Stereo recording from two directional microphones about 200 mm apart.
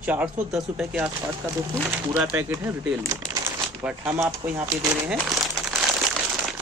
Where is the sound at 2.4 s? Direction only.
15° right (ahead or behind).